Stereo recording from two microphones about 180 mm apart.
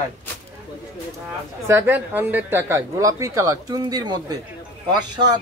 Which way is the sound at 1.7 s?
10° right (ahead or behind).